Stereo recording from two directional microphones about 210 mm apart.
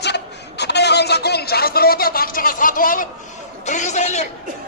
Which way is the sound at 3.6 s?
35° left (ahead or behind).